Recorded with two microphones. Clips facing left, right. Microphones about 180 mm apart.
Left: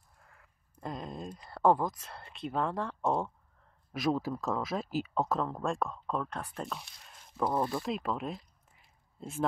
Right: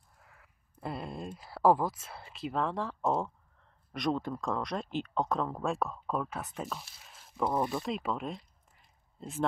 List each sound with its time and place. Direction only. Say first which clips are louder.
0.2 s speech: right 1 dB; centre (ahead or behind)
7.4 s speech: even; 15° right (ahead or behind)
7.7 s a sound: even; centre (ahead or behind)